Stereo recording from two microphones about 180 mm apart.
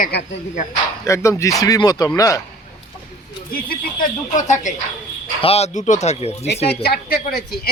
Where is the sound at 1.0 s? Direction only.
15° left (ahead or behind).